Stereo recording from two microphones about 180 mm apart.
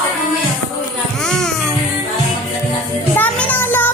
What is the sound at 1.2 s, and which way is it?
Music, 5° left (ahead or behind).